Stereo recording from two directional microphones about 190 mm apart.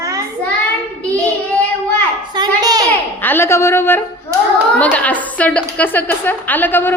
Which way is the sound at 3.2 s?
10° left (ahead or behind).